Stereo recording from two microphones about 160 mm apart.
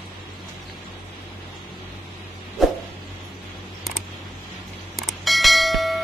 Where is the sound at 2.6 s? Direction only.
Centre (ahead or behind).